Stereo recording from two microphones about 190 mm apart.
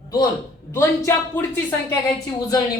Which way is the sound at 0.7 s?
10° left (ahead or behind).